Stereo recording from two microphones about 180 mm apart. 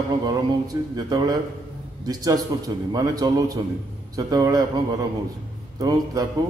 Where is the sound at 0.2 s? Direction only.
20° right (ahead or behind).